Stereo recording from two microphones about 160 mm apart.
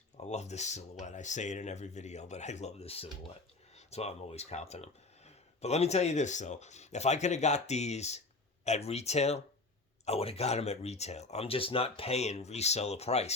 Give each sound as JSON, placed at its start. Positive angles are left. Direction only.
{"t": 0.2, "sound": "speech", "side_deg": 45}